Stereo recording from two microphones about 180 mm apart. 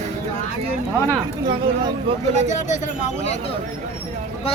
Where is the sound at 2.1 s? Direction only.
30° right (ahead or behind).